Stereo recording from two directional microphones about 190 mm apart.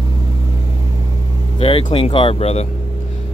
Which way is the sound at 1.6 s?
30° left (ahead or behind).